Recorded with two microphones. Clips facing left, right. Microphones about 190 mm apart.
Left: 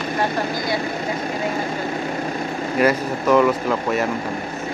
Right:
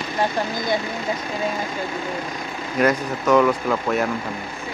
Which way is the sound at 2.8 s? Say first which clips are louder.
Left 1 dB; 5° left (ahead or behind).